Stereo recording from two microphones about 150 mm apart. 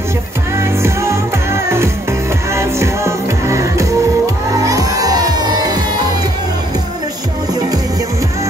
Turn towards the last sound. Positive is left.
turn(degrees=-25)  # may be behind; listen again after turning